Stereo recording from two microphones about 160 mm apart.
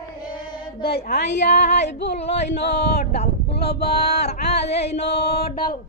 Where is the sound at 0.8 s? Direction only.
80° left.